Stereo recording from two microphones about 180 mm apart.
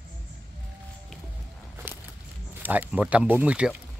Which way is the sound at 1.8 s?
10° right (ahead or behind).